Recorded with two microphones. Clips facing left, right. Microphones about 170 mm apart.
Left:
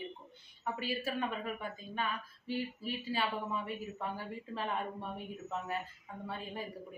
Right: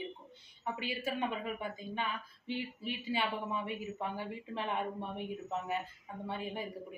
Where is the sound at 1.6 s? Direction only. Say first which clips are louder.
Right 1 dB; 20° right (ahead or behind).